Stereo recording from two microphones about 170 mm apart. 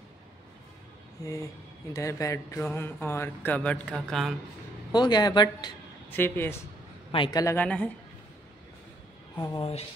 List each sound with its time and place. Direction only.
1.2 s speech: 20° left (ahead or behind); by 4.4 s centre (ahead or behind)
4.9 s speech: 25° left (ahead or behind)
6.0 s speech: 10° left (ahead or behind)
7.1 s speech: 25° left (ahead or behind)
7.5 s speech: 10° left (ahead or behind)
9.4 s speech: 20° left (ahead or behind)